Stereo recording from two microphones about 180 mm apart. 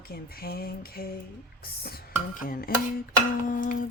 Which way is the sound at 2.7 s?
55° left (ahead or behind).